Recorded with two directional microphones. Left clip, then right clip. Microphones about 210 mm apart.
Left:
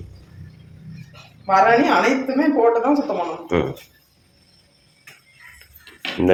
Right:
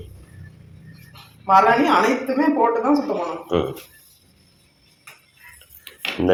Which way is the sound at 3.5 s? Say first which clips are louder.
Left 1 dB; 15° left (ahead or behind).